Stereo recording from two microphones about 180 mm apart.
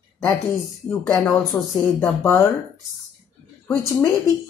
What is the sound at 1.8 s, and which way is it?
Speech, 5° left (ahead or behind).